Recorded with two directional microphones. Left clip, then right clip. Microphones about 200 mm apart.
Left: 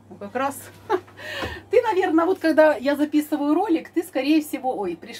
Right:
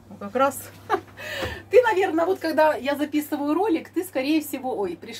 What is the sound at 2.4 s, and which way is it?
Speech, 15° left (ahead or behind).